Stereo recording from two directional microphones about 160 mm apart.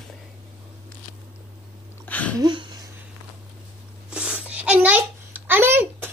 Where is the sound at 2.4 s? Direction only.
30° right (ahead or behind).